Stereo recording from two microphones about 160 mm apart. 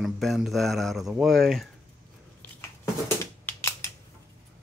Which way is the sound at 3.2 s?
15° left (ahead or behind).